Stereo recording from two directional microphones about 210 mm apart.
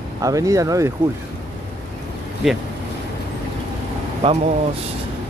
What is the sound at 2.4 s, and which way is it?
Speech, centre (ahead or behind).